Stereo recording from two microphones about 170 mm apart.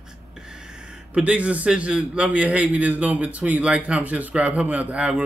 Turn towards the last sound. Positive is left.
turn(degrees=-10)  # may be behind; listen again after turning